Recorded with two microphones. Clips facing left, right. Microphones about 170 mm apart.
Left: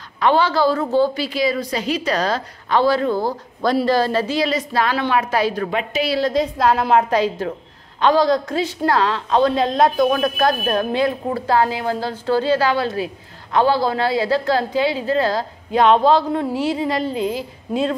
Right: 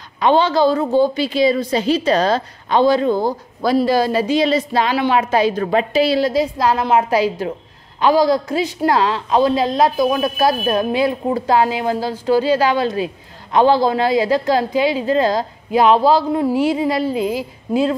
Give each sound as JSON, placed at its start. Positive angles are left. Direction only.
{"t": 0.2, "sound": "a woman's voice", "side_deg": -20}
{"t": 4.4, "sound": "a woman's voice", "side_deg": -25}
{"t": 5.7, "sound": "a woman's voice", "side_deg": -35}
{"t": 6.1, "sound": "speech", "side_deg": -10}